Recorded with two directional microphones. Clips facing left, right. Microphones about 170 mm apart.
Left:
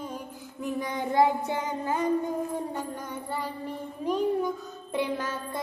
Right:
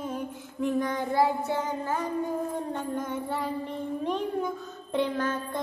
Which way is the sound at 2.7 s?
Centre (ahead or behind).